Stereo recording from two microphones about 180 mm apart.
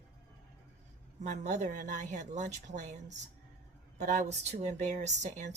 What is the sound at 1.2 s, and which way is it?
Speech, 45° right (ahead or behind).